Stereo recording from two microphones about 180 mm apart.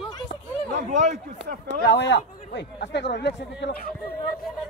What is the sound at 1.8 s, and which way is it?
Speech, 75° left (ahead or behind).